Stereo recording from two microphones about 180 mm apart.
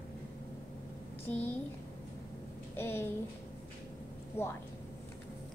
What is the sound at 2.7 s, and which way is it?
Speech, 15° left (ahead or behind).